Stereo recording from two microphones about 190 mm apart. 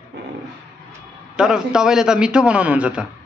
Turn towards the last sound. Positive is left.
turn(degrees=-5)  # may be behind; listen again after turning